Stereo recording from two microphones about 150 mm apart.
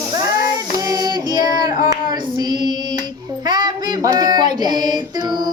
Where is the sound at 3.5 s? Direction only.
30° right (ahead or behind).